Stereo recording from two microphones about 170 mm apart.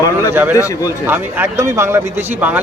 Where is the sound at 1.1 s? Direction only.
15° right (ahead or behind).